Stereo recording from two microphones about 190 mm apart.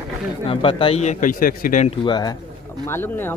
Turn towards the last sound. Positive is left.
turn(degrees=10)  # may be behind; listen again after turning